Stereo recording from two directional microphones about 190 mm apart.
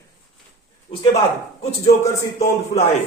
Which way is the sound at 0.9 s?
30° left (ahead or behind).